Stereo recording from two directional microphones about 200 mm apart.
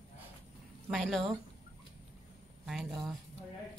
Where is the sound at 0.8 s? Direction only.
Centre (ahead or behind).